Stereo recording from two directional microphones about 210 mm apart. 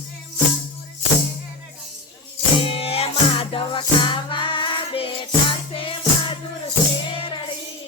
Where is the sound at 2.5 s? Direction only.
25° left (ahead or behind).